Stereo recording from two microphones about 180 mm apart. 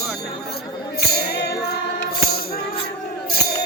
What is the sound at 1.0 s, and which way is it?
Music, 60° left (ahead or behind).